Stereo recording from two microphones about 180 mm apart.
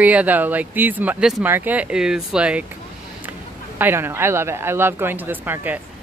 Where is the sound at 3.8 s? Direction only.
10° right (ahead or behind).